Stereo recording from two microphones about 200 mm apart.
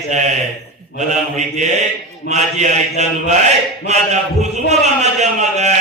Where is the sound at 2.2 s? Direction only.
35° right (ahead or behind).